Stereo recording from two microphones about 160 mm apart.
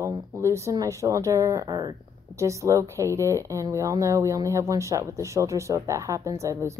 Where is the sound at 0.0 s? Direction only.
20° right (ahead or behind).